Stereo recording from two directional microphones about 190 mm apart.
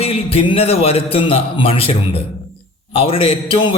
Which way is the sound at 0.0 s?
30° left (ahead or behind).